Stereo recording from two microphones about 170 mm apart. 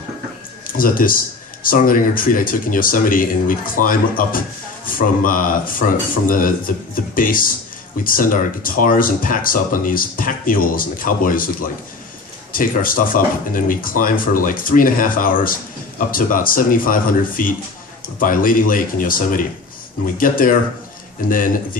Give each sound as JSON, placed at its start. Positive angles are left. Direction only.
{"t": 0.7, "sound": "speech", "side_deg": 55}